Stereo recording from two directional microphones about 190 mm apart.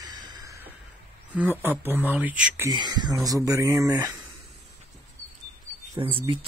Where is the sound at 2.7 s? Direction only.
20° right (ahead or behind).